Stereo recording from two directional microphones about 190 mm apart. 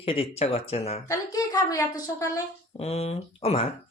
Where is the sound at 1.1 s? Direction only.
20° left (ahead or behind).